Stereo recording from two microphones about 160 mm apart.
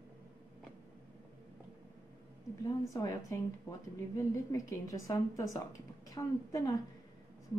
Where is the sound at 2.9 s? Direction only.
20° left (ahead or behind).